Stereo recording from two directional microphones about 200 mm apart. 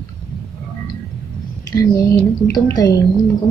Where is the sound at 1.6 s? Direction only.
15° left (ahead or behind).